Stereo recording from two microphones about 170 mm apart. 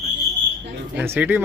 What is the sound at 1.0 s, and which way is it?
Speech, 10° right (ahead or behind).